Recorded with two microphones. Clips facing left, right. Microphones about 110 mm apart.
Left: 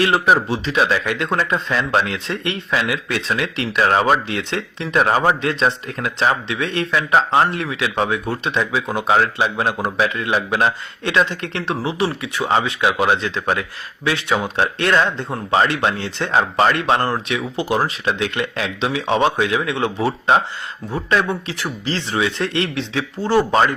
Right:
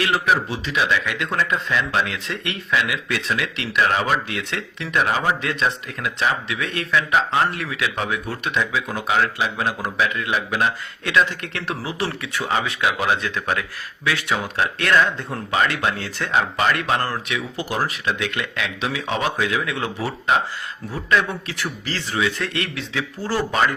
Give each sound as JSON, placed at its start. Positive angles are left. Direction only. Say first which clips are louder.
{"t": 0.0, "sound": "speech", "louder": "left 4 dB", "side_deg": 35}